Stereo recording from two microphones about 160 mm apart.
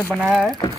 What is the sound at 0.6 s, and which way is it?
Speech, 25° left (ahead or behind).